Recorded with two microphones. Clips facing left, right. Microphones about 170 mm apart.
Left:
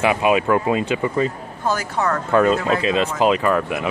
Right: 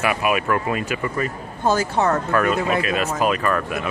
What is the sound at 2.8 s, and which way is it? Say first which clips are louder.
Speech: left 3 dB; 25° left (ahead or behind).